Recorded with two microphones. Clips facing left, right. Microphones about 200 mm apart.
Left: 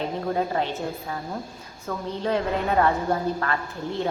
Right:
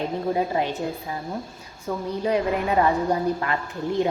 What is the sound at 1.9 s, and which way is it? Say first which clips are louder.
A woman's voice: right 2 dB; 15° right (ahead or behind).